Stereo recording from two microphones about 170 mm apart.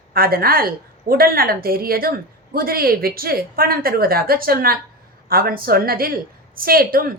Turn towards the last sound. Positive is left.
turn(degrees=-60)  # may be behind; listen again after turning